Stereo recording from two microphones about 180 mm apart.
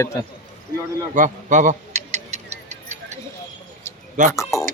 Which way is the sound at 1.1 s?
45° right (ahead or behind).